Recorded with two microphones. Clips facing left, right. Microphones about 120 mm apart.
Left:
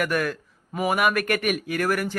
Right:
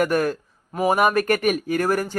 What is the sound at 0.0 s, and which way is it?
Speech, 35° right (ahead or behind).